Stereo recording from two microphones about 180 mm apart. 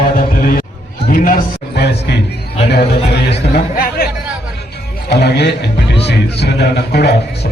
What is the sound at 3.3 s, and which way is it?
Speech, 60° left (ahead or behind).